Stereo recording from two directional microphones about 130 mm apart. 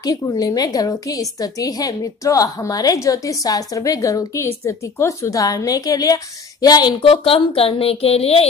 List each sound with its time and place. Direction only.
0.0 s a woman's voice: 30° left (ahead or behind); by 8.5 s 50° left (ahead or behind)